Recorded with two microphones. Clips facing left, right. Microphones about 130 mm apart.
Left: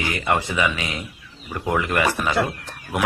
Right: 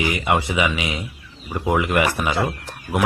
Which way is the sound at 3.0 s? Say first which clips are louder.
Right 2 dB; centre (ahead or behind).